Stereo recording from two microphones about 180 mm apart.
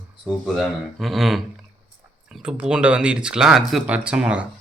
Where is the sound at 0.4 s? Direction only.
Centre (ahead or behind).